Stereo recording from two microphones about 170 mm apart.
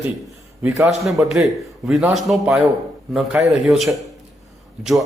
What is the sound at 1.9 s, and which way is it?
A man's voice, 5° right (ahead or behind).